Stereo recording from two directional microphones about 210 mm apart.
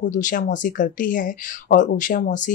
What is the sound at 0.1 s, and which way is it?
Speech, 35° left (ahead or behind).